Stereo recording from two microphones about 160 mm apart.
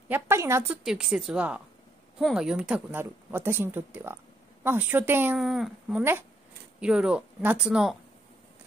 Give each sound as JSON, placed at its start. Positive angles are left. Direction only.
{"t": 0.1, "sound": "speech", "side_deg": -15}
{"t": 0.8, "sound": "speech", "side_deg": -5}
{"t": 5.4, "sound": "speech", "side_deg": 0}